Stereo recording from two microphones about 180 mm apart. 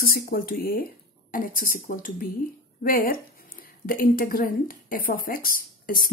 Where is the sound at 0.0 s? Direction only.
55° left (ahead or behind).